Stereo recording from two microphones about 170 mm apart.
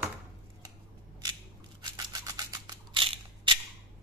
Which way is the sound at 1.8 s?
25° right (ahead or behind).